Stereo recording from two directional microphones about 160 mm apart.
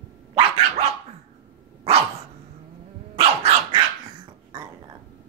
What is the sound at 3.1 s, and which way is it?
Dog, 40° right (ahead or behind).